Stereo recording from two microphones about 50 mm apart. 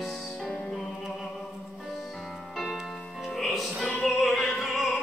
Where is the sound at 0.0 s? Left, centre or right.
Centre.